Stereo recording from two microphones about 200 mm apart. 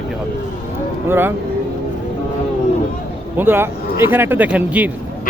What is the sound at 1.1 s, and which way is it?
Speech, 10° right (ahead or behind).